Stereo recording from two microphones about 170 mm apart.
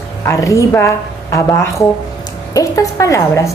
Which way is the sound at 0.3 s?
20° left (ahead or behind).